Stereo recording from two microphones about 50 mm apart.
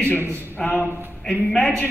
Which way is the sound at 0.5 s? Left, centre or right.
Centre.